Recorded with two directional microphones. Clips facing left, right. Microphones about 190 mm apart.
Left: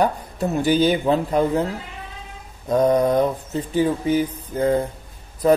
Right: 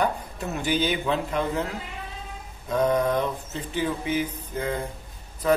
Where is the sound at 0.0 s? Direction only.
35° left (ahead or behind).